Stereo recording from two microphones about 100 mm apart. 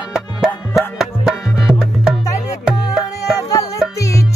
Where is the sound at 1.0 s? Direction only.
Centre (ahead or behind).